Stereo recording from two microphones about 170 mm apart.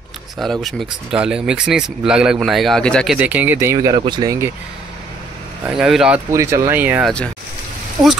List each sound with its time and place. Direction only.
0.4 s speech: centre (ahead or behind)
3.2 s speech: 10° right (ahead or behind)
5.7 s speech: centre (ahead or behind)
6.3 s speech: 15° right (ahead or behind)